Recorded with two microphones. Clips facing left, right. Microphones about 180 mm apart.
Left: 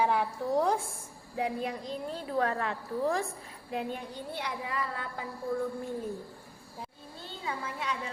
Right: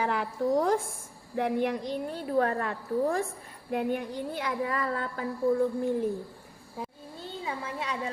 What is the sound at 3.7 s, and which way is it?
Speech, 55° right (ahead or behind).